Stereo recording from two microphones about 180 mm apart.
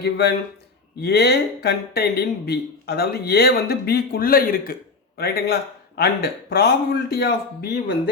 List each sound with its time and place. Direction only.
0.0 s speech: 65° left (ahead or behind)